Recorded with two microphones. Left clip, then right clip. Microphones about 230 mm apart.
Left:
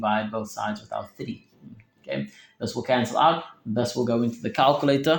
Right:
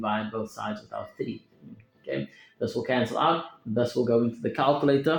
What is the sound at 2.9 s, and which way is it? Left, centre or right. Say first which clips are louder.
Speech: left 5 dB; left.